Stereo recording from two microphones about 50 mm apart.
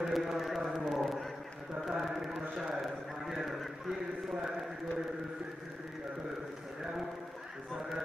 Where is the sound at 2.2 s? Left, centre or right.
Centre.